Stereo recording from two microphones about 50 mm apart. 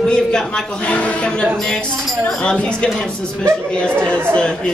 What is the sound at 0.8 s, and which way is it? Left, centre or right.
A man's voice, left.